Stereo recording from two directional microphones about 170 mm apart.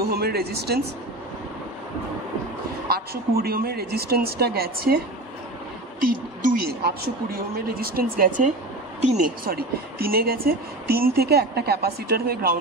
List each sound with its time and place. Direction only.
0.0 s speech: 65° right (ahead or behind)
2.9 s speech: 65° right (ahead or behind)
5.9 s speech: 60° right (ahead or behind)
9.0 s speech: 40° right (ahead or behind)
9.4 s speech: 60° right (ahead or behind)